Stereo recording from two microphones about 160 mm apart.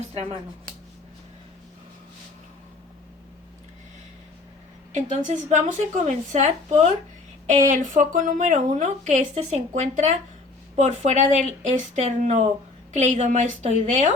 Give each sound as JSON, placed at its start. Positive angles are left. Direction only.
{"t": 4.9, "sound": "a woman's voice", "side_deg": -50}